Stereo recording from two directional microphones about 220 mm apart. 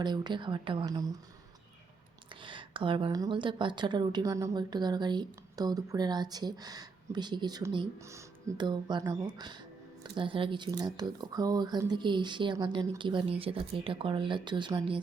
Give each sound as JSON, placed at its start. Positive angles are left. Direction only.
{"t": 0.0, "sound": "a woman's voice", "side_deg": -20}
{"t": 2.3, "sound": "a woman's voice", "side_deg": -20}